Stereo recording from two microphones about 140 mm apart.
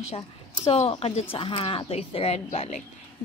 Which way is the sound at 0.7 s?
45° left (ahead or behind).